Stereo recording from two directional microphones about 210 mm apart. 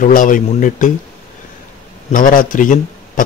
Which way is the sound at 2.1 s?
40° left (ahead or behind).